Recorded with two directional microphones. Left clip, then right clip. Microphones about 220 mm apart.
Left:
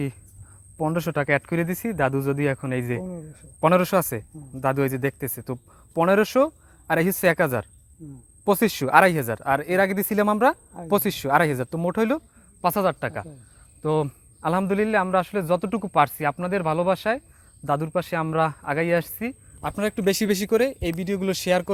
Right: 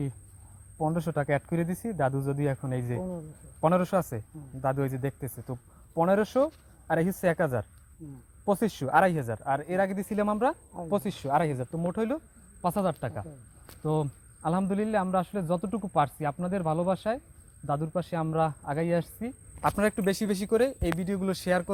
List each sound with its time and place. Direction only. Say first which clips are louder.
0.8 s a man's voice: left 5 dB; 45° left (ahead or behind)
3.0 s speech: left 1 dB; 30° left (ahead or behind)
3.6 s a man's voice: left 6 dB; 50° left (ahead or behind); by 21.7 s 30° left (ahead or behind)